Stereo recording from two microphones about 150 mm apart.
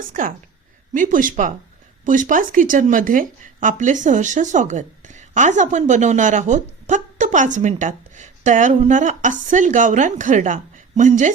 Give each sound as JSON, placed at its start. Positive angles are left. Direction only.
{"t": 0.1, "sound": "speech", "side_deg": -65}